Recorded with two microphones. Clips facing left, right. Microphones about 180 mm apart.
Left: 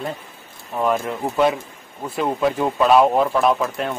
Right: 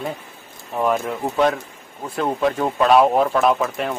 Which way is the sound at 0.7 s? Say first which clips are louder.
Even; centre (ahead or behind).